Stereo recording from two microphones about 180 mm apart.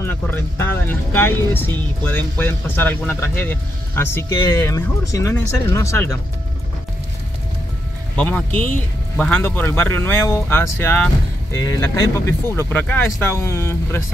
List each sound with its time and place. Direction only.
0.0 s speech: 10° left (ahead or behind)
8.2 s speech: 10° left (ahead or behind)